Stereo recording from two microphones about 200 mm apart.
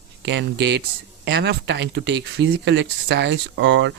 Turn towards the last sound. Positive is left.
turn(degrees=-65)  # may be behind; listen again after turning